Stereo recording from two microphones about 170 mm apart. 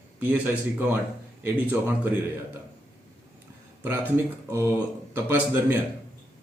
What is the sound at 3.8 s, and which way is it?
Speech, 10° right (ahead or behind).